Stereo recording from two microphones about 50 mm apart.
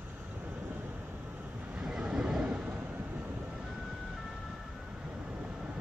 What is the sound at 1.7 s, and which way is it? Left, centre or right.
Vehicle, centre.